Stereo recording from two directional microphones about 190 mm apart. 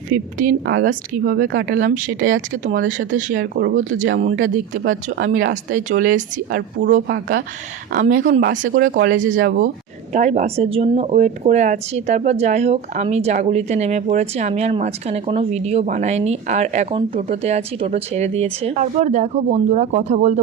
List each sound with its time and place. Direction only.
0.1 s speech: 45° right (ahead or behind)